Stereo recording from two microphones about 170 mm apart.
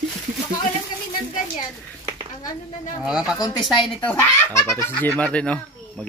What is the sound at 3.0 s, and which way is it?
Speech, 5° right (ahead or behind).